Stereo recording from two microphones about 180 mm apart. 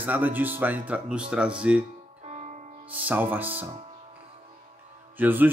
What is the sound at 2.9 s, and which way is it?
Speech, 10° right (ahead or behind).